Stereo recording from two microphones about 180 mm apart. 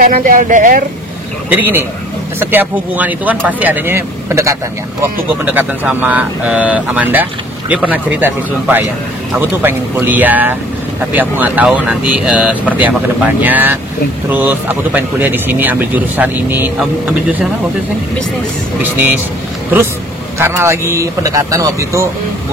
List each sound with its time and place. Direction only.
0.1 s speech: 50° right (ahead or behind)
1.5 s speech: 10° right (ahead or behind)
20.3 s speech: 15° right (ahead or behind)